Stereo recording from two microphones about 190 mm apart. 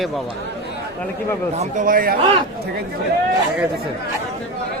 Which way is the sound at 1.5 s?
40° right (ahead or behind).